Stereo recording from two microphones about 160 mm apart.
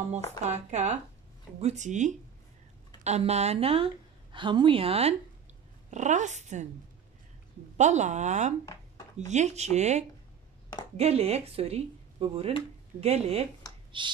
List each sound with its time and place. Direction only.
0.5 s a woman's voice: 45° right (ahead or behind)
5.9 s speech: 50° right (ahead or behind)
7.7 s speech: 45° right (ahead or behind); by 14.1 s 30° right (ahead or behind)